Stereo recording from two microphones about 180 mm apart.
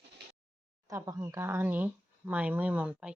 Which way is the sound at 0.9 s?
20° right (ahead or behind).